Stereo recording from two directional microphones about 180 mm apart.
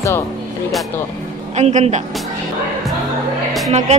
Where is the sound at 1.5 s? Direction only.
35° right (ahead or behind).